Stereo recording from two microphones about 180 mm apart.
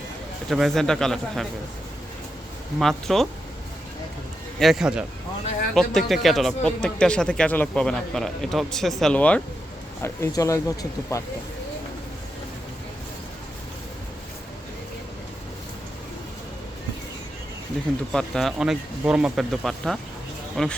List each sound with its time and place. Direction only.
0.5 s a man's voice: centre (ahead or behind)
2.7 s a man's voice: centre (ahead or behind)
4.6 s a man's voice: centre (ahead or behind); by 11.2 s 15° left (ahead or behind)
18.1 s a man's voice: centre (ahead or behind)